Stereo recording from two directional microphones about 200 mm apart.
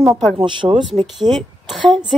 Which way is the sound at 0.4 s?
25° right (ahead or behind).